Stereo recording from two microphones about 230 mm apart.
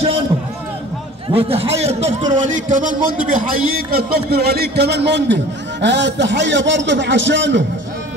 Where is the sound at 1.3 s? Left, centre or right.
Right.